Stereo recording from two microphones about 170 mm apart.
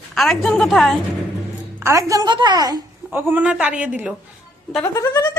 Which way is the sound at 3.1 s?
10° right (ahead or behind).